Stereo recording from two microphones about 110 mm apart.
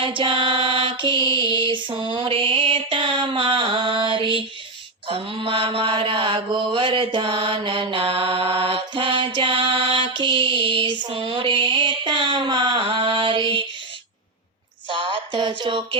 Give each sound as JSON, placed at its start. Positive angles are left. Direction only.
{"t": 0.0, "sound": "music", "side_deg": -50}
{"t": 5.0, "sound": "mantra", "side_deg": -60}
{"t": 14.8, "sound": "a sound", "side_deg": -50}